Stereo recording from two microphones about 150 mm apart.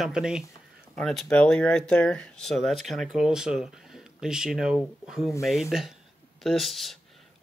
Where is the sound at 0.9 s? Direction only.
5° left (ahead or behind).